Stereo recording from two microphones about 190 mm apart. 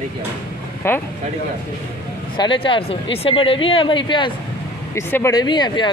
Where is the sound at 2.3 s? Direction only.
25° left (ahead or behind).